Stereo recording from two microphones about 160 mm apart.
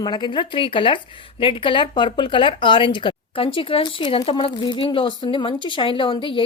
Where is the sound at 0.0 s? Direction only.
30° left (ahead or behind).